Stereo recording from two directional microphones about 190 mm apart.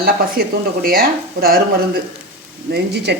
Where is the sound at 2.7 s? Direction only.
60° right (ahead or behind).